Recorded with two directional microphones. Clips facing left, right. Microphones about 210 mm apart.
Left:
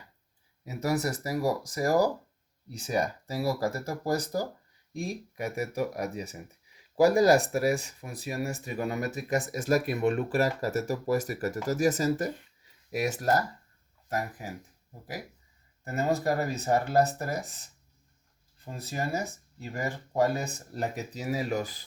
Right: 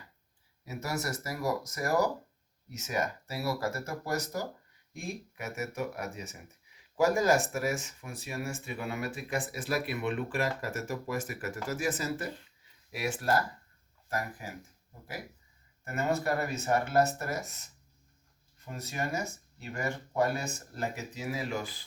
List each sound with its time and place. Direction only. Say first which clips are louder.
0.8 s speech: left 7 dB; 35° left (ahead or behind)
15.8 s speech: left 3 dB; 35° left (ahead or behind)